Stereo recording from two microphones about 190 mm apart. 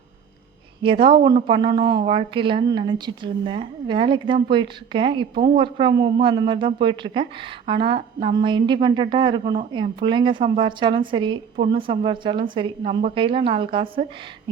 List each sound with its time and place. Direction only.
0.8 s a woman's voice: 25° right (ahead or behind)